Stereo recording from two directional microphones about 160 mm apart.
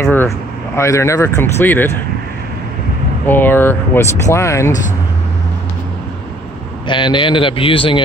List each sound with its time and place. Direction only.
0.0 s speech: 15° left (ahead or behind)
3.3 s speech: 10° left (ahead or behind)
6.9 s a man's voice: 30° left (ahead or behind)